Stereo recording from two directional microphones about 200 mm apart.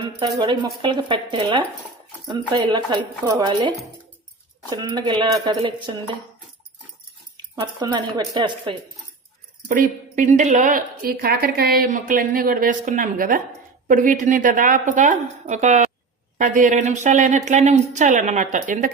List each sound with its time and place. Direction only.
0.0 s speech: 25° right (ahead or behind)
7.5 s speech: 20° right (ahead or behind)
9.6 s a woman's voice: 40° right (ahead or behind)